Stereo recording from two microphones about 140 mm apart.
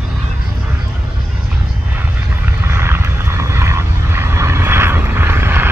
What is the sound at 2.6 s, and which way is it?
Vehicle, 15° right (ahead or behind).